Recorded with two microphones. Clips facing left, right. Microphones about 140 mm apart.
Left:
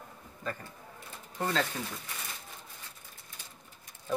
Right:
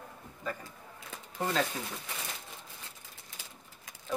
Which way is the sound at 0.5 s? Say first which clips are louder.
Even; 10° right (ahead or behind).